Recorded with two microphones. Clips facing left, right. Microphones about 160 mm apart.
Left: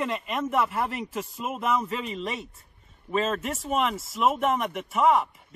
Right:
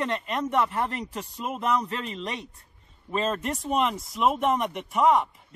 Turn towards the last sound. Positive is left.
turn(degrees=0)  # may be behind; listen again after turning